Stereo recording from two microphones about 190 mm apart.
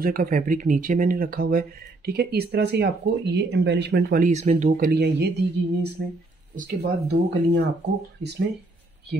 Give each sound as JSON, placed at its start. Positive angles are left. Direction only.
{"t": 0.0, "sound": "speech", "side_deg": -50}